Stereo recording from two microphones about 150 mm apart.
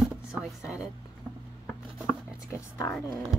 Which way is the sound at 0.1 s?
5° right (ahead or behind).